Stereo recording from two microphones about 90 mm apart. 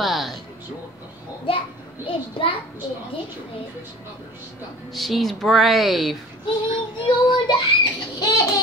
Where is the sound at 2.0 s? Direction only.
75° left (ahead or behind).